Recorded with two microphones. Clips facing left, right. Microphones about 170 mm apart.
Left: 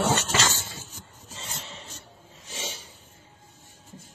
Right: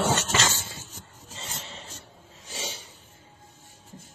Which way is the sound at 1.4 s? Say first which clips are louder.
Even; 35° right (ahead or behind).